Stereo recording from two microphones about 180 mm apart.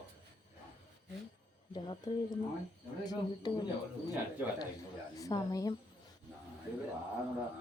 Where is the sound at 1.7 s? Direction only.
25° left (ahead or behind).